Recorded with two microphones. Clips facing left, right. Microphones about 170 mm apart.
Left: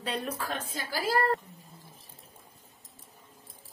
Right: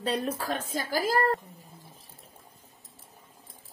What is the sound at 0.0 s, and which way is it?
Speech, 40° right (ahead or behind).